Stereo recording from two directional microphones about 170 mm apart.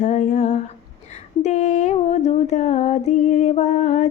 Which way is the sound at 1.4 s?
45° left (ahead or behind).